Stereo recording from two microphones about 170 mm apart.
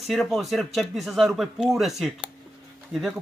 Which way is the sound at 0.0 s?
Centre (ahead or behind).